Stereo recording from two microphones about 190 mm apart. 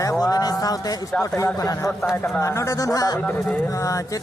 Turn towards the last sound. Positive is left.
turn(degrees=15)  # may be behind; listen again after turning